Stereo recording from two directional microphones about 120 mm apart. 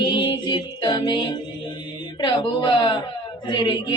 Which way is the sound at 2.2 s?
45° left (ahead or behind).